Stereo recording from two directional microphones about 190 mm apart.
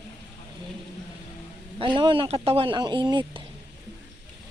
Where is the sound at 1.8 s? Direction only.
25° right (ahead or behind).